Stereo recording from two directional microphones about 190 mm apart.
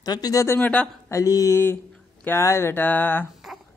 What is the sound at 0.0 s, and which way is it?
Speech, 20° left (ahead or behind).